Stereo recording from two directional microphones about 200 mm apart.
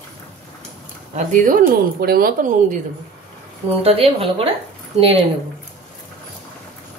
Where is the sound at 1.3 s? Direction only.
40° right (ahead or behind).